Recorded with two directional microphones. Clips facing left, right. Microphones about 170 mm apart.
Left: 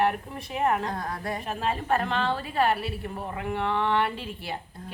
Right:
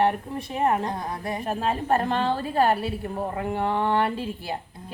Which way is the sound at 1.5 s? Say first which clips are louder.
Right 3 dB; 40° right (ahead or behind).